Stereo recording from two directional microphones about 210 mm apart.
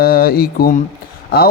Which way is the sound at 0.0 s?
45° left (ahead or behind).